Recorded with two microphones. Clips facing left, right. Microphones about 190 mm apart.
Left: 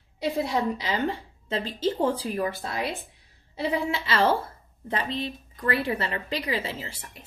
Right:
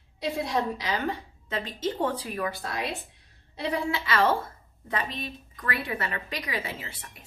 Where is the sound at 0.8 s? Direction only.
30° left (ahead or behind).